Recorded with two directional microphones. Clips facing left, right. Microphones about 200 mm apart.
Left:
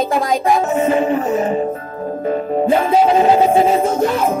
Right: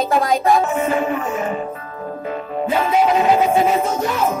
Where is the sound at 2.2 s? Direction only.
45° left (ahead or behind).